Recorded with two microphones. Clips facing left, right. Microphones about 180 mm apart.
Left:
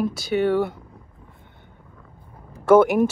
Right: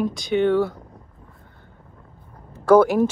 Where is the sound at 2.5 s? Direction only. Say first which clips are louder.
Even; 10° left (ahead or behind).